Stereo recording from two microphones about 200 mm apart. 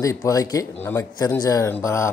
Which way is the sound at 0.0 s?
15° left (ahead or behind).